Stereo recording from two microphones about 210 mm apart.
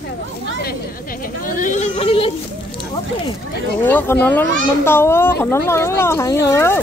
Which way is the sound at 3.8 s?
10° left (ahead or behind).